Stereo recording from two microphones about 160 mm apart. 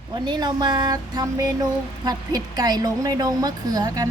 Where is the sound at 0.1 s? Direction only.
25° right (ahead or behind).